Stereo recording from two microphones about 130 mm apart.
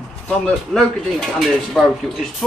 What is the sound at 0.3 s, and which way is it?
Speech, 5° left (ahead or behind).